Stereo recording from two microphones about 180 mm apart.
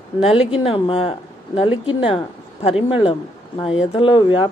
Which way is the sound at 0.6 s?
30° left (ahead or behind).